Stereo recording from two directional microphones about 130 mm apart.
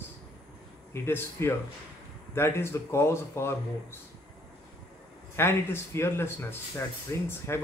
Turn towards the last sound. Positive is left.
turn(degrees=20)  # may be behind; listen again after turning